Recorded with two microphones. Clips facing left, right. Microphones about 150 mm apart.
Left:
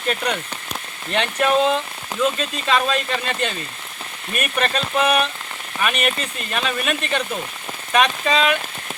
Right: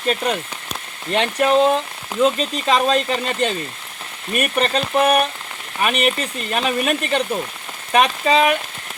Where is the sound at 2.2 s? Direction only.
35° right (ahead or behind).